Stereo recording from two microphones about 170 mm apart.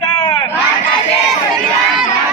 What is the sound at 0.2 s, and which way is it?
Crowd, 30° left (ahead or behind).